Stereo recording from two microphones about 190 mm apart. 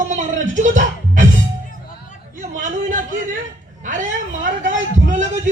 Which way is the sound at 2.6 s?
45° right (ahead or behind).